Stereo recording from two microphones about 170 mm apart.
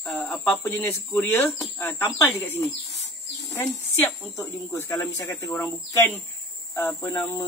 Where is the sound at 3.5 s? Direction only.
10° left (ahead or behind).